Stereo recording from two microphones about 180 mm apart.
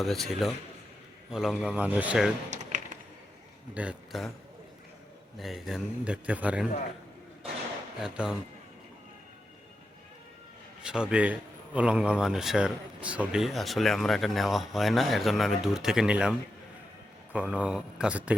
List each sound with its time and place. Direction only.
0.0 s speech: centre (ahead or behind)
2.5 s a sound: 45° right (ahead or behind)
3.8 s speech: 5° right (ahead or behind)
5.4 s speech: centre (ahead or behind)
7.9 s speech: 5° right (ahead or behind)
10.8 s speech: 5° right (ahead or behind)
17.5 s speech: 5° right (ahead or behind)